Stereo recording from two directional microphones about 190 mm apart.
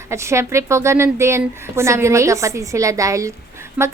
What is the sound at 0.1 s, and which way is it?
A woman's voice, 15° right (ahead or behind).